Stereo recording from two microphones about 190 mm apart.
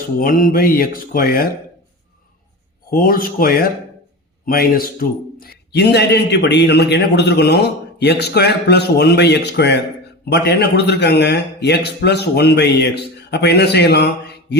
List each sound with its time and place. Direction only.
0.2 s speech: 45° left (ahead or behind)
2.9 s a man's voice: 50° left (ahead or behind)